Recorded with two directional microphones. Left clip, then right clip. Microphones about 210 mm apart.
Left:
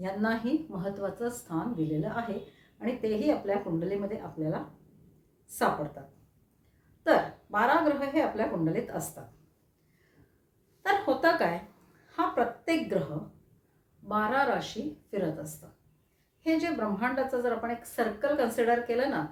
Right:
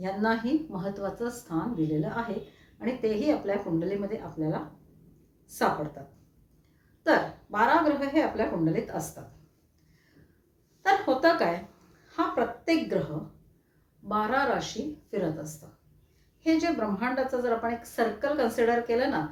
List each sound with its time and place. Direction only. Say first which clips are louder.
0.0 s a woman's voice: right 3 dB; 5° left (ahead or behind)
7.0 s a woman's voice: right 1 dB; 5° left (ahead or behind)
10.8 s a woman's voice: right 3 dB; 5° left (ahead or behind)
14.1 s a woman's voice: right 1 dB; 5° left (ahead or behind)